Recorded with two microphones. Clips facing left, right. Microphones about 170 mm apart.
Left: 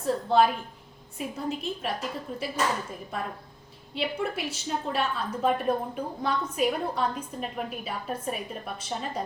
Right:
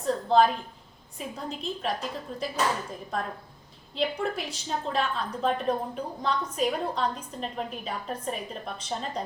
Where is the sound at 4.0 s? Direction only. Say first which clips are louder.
Right 1 dB; 5° left (ahead or behind).